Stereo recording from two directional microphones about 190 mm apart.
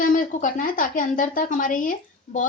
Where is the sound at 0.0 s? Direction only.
45° left (ahead or behind).